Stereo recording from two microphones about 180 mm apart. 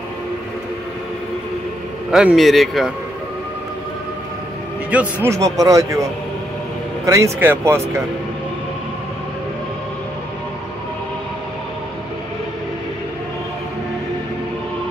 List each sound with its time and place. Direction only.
2.0 s speech: 5° right (ahead or behind)
4.9 s a man's voice: 15° right (ahead or behind)
7.1 s a man's voice: 15° right (ahead or behind)